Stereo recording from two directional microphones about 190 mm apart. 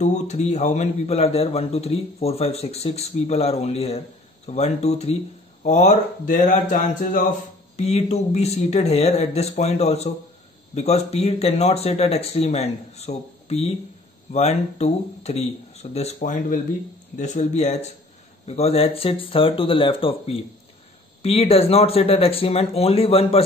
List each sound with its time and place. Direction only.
0.0 s a man's voice: 35° left (ahead or behind)